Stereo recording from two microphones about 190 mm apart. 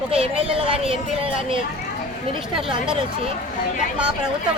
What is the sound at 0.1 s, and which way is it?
Speech, 30° right (ahead or behind).